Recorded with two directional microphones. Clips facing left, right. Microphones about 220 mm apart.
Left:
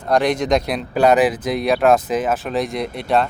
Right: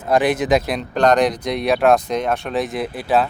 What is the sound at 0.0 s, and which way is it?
Speech, 5° right (ahead or behind).